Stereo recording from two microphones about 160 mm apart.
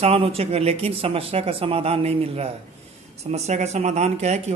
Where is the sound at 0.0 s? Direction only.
35° right (ahead or behind).